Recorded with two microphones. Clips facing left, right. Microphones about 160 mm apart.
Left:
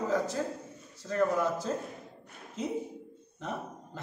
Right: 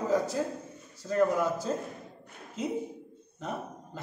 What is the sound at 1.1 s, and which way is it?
Mantra, 5° right (ahead or behind).